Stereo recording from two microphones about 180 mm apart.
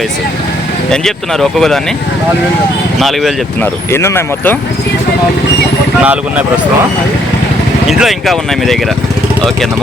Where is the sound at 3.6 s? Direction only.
15° left (ahead or behind).